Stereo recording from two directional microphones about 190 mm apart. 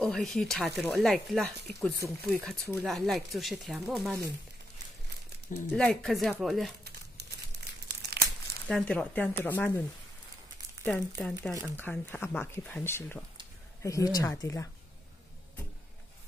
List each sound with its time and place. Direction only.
0.0 s speech: centre (ahead or behind)
5.7 s speech: 5° left (ahead or behind)
6.8 s crumpling: 60° right (ahead or behind)
8.6 s speech: 5° left (ahead or behind)
11.1 s speech: 5° left (ahead or behind)